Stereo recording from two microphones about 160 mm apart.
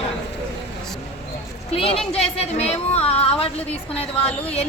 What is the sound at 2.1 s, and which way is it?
A woman's voice, 40° left (ahead or behind).